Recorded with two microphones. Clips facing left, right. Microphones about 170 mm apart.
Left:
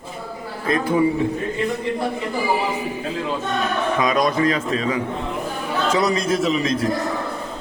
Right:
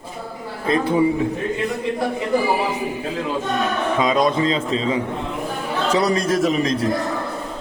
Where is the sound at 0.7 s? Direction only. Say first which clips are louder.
Right 1 dB; 30° right (ahead or behind).